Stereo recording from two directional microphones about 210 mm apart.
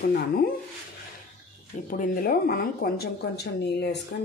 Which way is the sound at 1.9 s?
40° left (ahead or behind).